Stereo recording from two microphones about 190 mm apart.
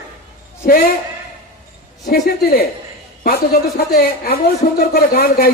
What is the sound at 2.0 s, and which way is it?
A woman's voice, 55° left (ahead or behind).